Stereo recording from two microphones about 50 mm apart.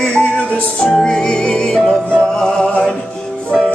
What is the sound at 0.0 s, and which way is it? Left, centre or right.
Music, left.